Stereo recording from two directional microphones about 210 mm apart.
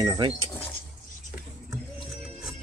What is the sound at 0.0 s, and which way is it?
Speech, 20° right (ahead or behind).